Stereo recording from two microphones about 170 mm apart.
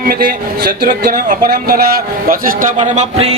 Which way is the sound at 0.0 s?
65° right (ahead or behind).